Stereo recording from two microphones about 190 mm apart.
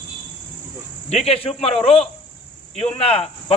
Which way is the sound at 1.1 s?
30° left (ahead or behind).